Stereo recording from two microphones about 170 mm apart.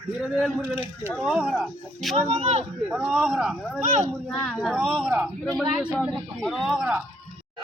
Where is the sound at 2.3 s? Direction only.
35° right (ahead or behind).